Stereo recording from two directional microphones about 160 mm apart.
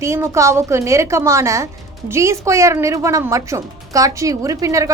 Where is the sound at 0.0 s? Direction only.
20° right (ahead or behind).